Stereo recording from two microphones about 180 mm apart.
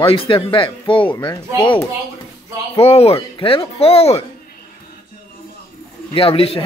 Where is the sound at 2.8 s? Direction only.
35° left (ahead or behind).